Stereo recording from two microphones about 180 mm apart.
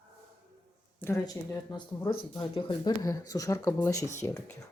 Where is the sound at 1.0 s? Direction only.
15° left (ahead or behind).